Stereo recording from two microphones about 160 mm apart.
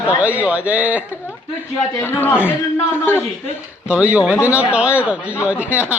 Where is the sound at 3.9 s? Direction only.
10° right (ahead or behind).